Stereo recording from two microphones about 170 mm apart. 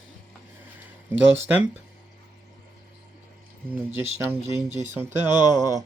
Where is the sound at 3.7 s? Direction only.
15° right (ahead or behind).